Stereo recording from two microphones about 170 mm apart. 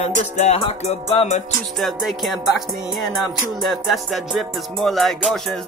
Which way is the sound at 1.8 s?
Centre (ahead or behind).